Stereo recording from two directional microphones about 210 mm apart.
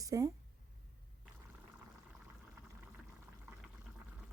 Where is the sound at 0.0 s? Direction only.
15° right (ahead or behind).